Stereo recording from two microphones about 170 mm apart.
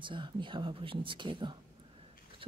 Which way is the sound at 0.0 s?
30° right (ahead or behind).